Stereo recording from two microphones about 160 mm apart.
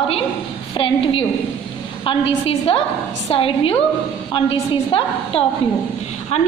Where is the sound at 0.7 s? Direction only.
35° left (ahead or behind).